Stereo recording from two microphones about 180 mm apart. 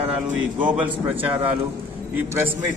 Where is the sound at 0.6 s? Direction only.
10° right (ahead or behind).